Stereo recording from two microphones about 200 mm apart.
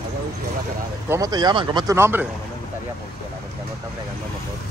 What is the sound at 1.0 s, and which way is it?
A man's voice, 15° right (ahead or behind).